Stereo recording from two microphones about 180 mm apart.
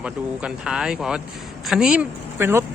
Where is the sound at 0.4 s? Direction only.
5° right (ahead or behind).